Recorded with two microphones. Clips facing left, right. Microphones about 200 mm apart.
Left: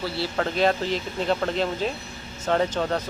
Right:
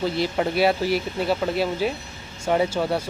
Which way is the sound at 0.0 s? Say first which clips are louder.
Right 4 dB; 15° right (ahead or behind).